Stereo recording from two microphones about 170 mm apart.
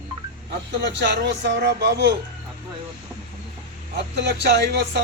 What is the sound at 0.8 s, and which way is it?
Speech, 90° right.